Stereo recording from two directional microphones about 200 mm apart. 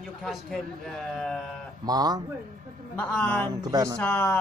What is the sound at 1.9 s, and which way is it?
Speech, 20° right (ahead or behind).